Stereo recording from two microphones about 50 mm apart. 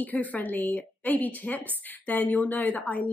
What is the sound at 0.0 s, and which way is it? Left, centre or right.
Speech, left.